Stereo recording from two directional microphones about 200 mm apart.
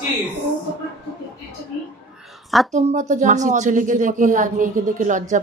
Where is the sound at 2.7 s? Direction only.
35° right (ahead or behind).